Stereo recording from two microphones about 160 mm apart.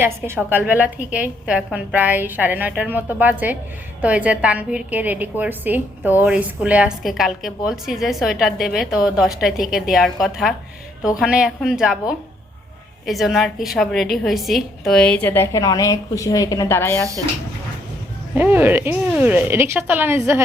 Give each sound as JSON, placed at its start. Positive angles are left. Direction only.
{"t": 0.0, "sound": "a woman's voice", "side_deg": -10}
{"t": 17.0, "sound": "speech", "side_deg": -20}
{"t": 18.3, "sound": "a woman's voice", "side_deg": -10}